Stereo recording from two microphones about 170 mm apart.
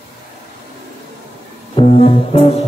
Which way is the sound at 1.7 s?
35° left (ahead or behind).